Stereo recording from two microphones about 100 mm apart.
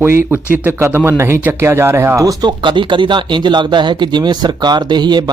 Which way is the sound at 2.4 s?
55° right (ahead or behind).